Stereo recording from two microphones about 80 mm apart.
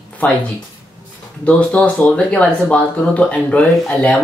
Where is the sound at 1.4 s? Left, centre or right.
Centre.